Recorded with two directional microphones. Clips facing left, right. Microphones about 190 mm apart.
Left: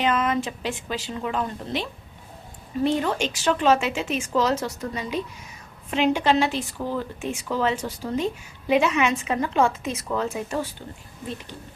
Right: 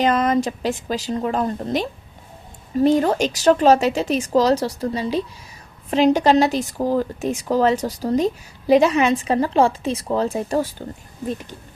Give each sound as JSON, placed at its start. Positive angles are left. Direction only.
{"t": 0.0, "sound": "speech", "side_deg": -40}